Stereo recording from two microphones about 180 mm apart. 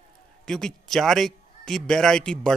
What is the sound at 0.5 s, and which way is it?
Speech, 5° left (ahead or behind).